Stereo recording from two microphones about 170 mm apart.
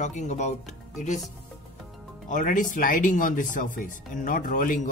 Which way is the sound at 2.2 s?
50° left (ahead or behind).